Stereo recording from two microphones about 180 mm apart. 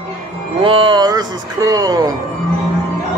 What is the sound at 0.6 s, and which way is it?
Speech, 30° right (ahead or behind).